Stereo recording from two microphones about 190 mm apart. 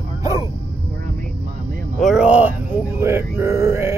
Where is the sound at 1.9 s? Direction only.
Centre (ahead or behind).